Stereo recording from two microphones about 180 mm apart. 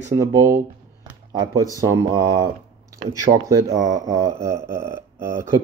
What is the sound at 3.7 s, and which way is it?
Speech, 45° right (ahead or behind).